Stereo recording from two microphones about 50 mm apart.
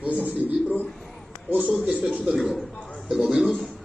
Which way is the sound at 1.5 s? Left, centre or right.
Right.